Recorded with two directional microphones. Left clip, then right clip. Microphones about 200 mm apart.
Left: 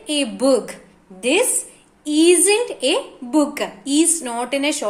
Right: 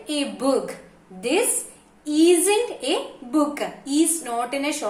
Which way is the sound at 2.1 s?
40° left (ahead or behind).